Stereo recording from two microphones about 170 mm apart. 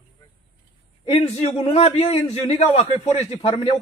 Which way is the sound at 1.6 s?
40° left (ahead or behind).